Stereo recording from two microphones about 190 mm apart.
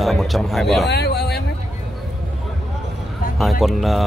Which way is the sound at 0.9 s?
60° left (ahead or behind).